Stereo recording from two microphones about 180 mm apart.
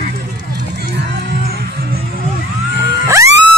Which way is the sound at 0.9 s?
70° right (ahead or behind).